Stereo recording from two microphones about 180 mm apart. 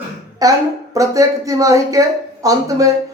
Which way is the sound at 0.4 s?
20° right (ahead or behind).